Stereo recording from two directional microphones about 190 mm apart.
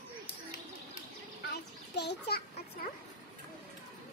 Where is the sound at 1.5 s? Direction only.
60° left (ahead or behind).